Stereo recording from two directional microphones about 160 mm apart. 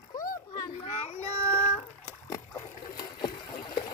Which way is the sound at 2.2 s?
20° left (ahead or behind).